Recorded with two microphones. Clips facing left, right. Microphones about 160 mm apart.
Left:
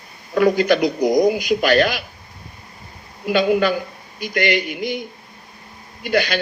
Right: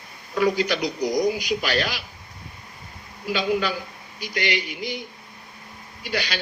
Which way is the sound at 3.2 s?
55° left (ahead or behind).